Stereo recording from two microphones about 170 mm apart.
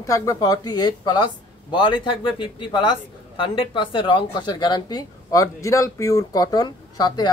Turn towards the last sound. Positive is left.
turn(degrees=25)  # may be behind; listen again after turning